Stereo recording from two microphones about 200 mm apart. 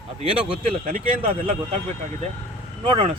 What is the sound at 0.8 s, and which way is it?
Speech, 45° right (ahead or behind).